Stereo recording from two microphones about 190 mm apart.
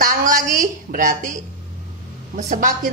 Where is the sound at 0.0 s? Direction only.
45° right (ahead or behind).